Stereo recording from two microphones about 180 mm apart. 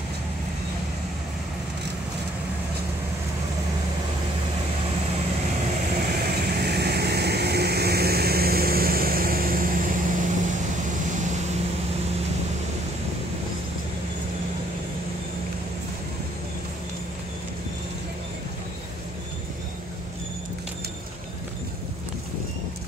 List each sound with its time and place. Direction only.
6.1 s vehicle: 60° right (ahead or behind)